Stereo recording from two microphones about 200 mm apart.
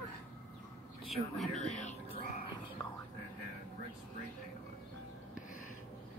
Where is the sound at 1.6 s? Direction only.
35° left (ahead or behind).